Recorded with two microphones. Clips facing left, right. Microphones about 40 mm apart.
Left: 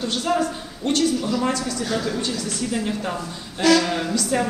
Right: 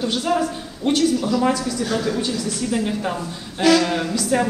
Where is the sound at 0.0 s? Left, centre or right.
Centre.